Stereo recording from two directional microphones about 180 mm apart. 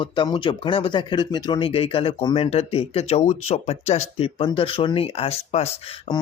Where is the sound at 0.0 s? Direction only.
25° left (ahead or behind).